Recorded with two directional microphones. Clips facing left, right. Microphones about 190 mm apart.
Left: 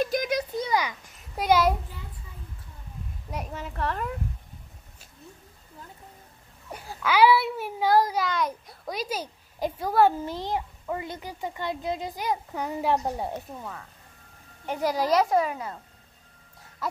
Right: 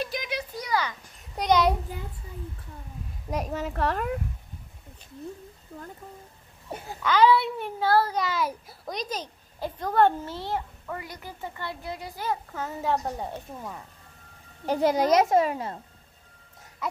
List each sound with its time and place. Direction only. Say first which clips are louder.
0.0 s a sound: left 6 dB; 45° left (ahead or behind)
0.6 s a sound: even; 25° left (ahead or behind)
0.8 s a child's voice: even; 5° left (ahead or behind)
3.3 s a child's voice: right 6 dB; 40° right (ahead or behind)
6.7 s a child's voice: right 3 dB; 25° right (ahead or behind)
7.0 s a child's voice: even; 10° left (ahead or behind)
8.2 s a child's voice: left 1 dB; 5° right (ahead or behind); by 13.4 s 10° left (ahead or behind)
14.7 s a child's voice: right 3 dB; 25° right (ahead or behind)